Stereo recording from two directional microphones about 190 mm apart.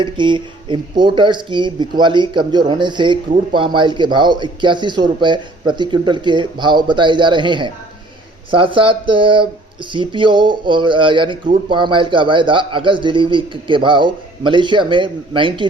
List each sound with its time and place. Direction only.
0.0 s a man's voice: 25° right (ahead or behind)